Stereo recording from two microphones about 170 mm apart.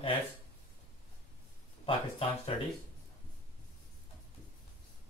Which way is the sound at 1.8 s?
35° left (ahead or behind).